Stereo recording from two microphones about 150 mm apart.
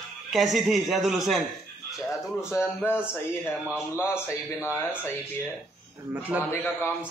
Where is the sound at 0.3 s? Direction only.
Centre (ahead or behind).